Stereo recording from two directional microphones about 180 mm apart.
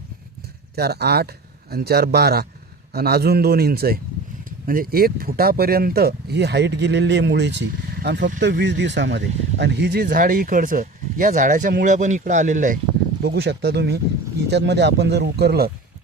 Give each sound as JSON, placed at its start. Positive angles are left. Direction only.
{"t": 0.8, "sound": "speech", "side_deg": -65}
{"t": 13.2, "sound": "speech", "side_deg": -65}